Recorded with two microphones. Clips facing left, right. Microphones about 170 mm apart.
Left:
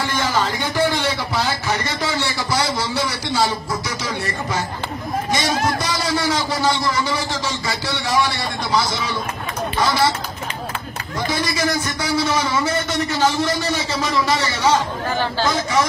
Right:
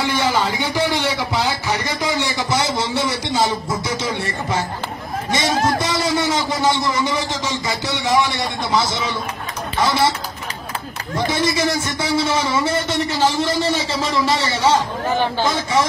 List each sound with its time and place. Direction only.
0.0 s a sound: 15° right (ahead or behind)
4.0 s speech: 25° right (ahead or behind)
11.2 s speech: 25° right (ahead or behind)